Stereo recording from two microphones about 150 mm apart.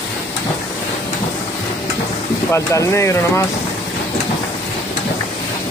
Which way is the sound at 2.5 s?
20° left (ahead or behind).